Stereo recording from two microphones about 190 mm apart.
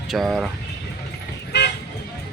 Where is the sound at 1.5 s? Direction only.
60° left (ahead or behind).